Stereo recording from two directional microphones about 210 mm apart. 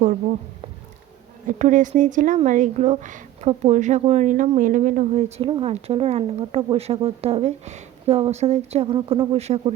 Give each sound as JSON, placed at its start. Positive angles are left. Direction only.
{"t": 0.0, "sound": "speech", "side_deg": -40}
{"t": 1.5, "sound": "speech", "side_deg": -35}
{"t": 5.4, "sound": "speech", "side_deg": -25}